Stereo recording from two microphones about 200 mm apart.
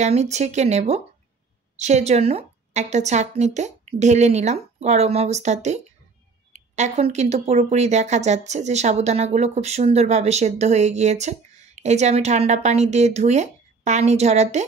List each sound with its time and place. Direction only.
0.0 s speech: 35° right (ahead or behind)